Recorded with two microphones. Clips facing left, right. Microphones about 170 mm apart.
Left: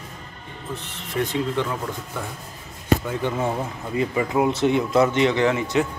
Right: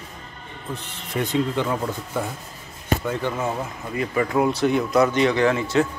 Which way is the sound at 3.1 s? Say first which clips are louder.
Left 1 dB; 10° left (ahead or behind).